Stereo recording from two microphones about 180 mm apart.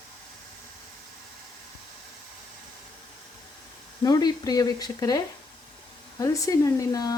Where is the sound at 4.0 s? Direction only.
20° left (ahead or behind).